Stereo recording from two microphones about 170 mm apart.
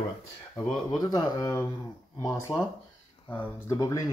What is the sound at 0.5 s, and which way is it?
Speech, 5° left (ahead or behind).